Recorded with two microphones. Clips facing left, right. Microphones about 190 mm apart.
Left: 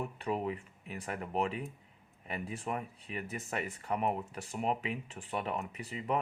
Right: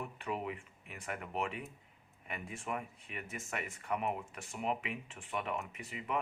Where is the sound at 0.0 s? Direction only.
35° left (ahead or behind).